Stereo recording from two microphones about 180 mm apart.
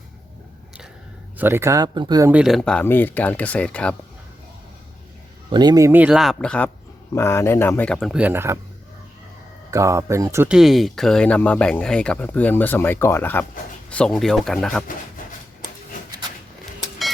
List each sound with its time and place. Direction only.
1.4 s speech: 15° right (ahead or behind)
2.3 s speech: centre (ahead or behind)
5.5 s speech: 25° right (ahead or behind)
9.7 s speech: 15° right (ahead or behind)
10.5 s speech: centre (ahead or behind)